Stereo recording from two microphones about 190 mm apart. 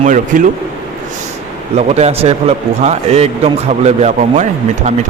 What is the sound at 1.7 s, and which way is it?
A man's voice, 35° right (ahead or behind).